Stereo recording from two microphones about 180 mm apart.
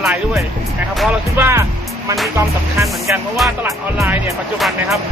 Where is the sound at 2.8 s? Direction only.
Centre (ahead or behind).